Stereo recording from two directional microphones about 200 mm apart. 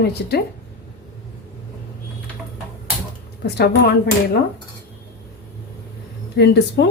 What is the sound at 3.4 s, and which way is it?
Speech, 55° left (ahead or behind).